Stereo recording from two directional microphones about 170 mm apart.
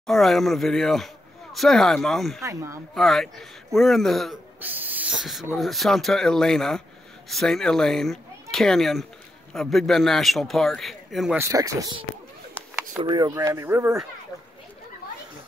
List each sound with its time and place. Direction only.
0.0 s speech: centre (ahead or behind)
2.4 s speech: 20° right (ahead or behind)
2.9 s speech: centre (ahead or behind)
4.6 s speech: 10° right (ahead or behind)
11.3 s speech: 20° right (ahead or behind)
13.0 s speech: 25° right (ahead or behind)